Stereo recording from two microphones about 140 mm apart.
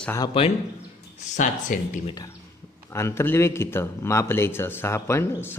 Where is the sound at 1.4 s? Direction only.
65° left (ahead or behind).